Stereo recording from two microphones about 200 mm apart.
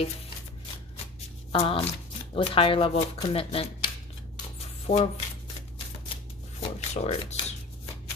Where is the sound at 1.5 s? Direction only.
25° left (ahead or behind).